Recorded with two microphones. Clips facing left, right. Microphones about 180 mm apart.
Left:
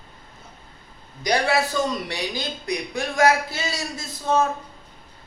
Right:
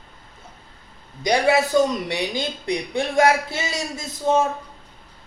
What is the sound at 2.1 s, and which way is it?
A man's voice, 20° right (ahead or behind).